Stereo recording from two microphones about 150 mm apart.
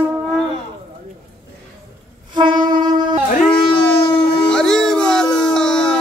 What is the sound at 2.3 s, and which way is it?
Train, 30° right (ahead or behind).